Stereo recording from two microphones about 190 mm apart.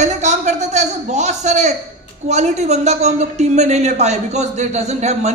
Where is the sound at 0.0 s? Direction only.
35° right (ahead or behind).